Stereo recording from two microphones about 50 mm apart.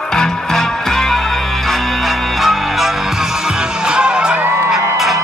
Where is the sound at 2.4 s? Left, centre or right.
Centre.